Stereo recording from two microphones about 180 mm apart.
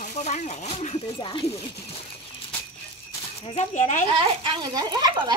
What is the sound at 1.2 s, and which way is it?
Speech, 25° left (ahead or behind).